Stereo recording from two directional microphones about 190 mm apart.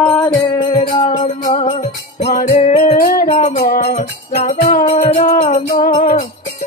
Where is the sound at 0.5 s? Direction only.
30° left (ahead or behind).